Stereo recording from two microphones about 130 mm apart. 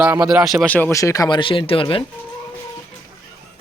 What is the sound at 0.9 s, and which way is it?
Speech, 25° left (ahead or behind).